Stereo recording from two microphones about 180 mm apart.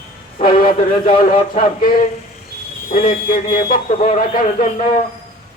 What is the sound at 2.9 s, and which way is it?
Speech, 45° left (ahead or behind).